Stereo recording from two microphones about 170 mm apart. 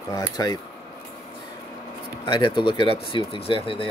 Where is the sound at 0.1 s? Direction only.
20° left (ahead or behind).